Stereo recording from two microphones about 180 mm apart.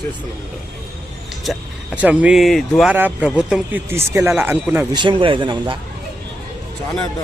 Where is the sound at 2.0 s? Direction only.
5° right (ahead or behind).